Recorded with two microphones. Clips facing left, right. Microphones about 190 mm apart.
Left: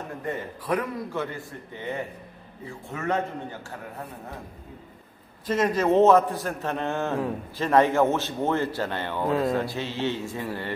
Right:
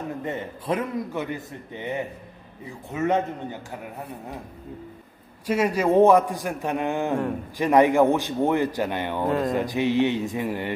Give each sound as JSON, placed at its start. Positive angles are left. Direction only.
{"t": 0.2, "sound": "a man's voice", "side_deg": -25}
{"t": 5.5, "sound": "a man's voice", "side_deg": -10}
{"t": 9.2, "sound": "speech", "side_deg": 0}
{"t": 9.5, "sound": "a man's voice", "side_deg": -15}